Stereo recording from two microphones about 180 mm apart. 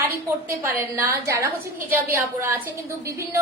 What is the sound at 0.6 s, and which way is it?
A woman's voice, 15° right (ahead or behind).